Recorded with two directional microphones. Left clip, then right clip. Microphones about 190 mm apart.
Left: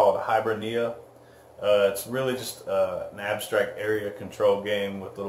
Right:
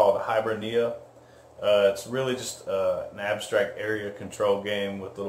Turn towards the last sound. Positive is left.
turn(degrees=0)  # may be behind; listen again after turning